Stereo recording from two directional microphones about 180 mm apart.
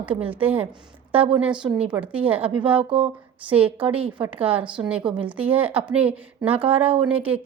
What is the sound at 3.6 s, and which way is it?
Speech, 30° right (ahead or behind).